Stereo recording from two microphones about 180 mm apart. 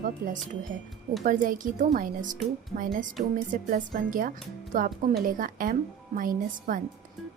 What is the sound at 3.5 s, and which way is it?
A woman's voice, 50° right (ahead or behind).